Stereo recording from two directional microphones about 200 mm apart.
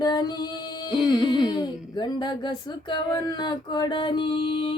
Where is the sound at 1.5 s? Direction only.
20° left (ahead or behind).